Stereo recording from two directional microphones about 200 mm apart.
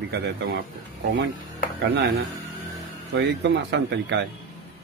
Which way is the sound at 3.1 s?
55° right (ahead or behind).